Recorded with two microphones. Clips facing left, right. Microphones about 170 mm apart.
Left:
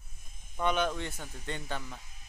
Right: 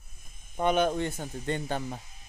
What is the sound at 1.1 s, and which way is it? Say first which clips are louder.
Speech: right 8 dB; 30° right (ahead or behind).